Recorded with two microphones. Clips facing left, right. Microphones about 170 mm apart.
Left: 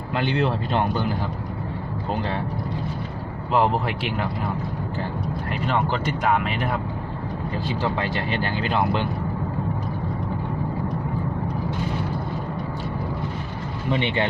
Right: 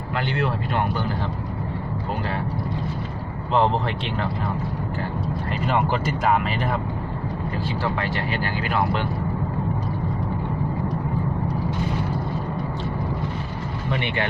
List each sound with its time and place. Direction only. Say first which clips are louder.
0.1 s speech: left 2 dB; 20° left (ahead or behind)
3.5 s speech: even; 5° left (ahead or behind)
5.5 s speech: right 1 dB; 5° right (ahead or behind)
7.8 s speech: left 1 dB; 20° left (ahead or behind)
13.9 s speech: left 3 dB; 25° left (ahead or behind)